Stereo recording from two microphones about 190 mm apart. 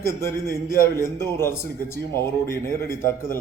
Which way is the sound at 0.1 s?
15° left (ahead or behind).